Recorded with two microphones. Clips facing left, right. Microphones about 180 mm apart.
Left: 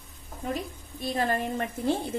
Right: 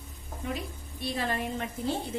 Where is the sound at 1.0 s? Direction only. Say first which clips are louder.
Left 4 dB; 45° left (ahead or behind).